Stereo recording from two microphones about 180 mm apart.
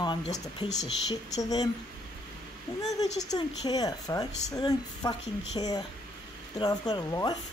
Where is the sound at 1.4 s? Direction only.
20° left (ahead or behind).